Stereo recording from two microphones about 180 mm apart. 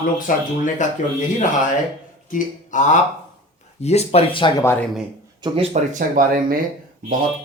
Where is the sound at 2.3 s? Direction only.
45° left (ahead or behind).